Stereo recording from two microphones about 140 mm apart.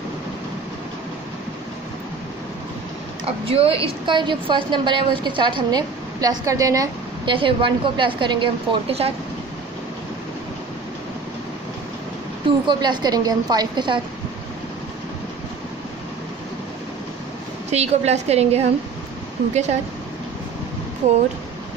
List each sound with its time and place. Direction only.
3.3 s a woman's voice: 45° right (ahead or behind); by 6.9 s 25° right (ahead or behind)
7.2 s a woman's voice: 35° right (ahead or behind)
12.6 s a woman's voice: 30° right (ahead or behind)
17.6 s a woman's voice: 50° right (ahead or behind)